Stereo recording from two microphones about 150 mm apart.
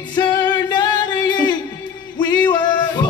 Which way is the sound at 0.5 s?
25° left (ahead or behind).